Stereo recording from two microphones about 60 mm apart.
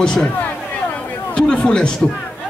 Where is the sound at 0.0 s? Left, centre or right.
Centre.